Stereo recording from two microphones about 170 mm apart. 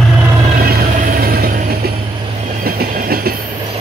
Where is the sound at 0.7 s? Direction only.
55° right (ahead or behind).